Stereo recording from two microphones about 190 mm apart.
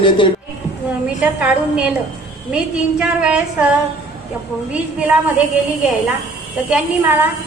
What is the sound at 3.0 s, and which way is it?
Speech, 5° right (ahead or behind).